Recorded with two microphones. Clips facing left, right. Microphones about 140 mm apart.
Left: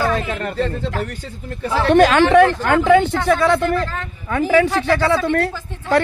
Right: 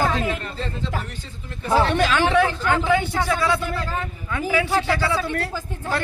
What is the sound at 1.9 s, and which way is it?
A man's voice, 50° left (ahead or behind).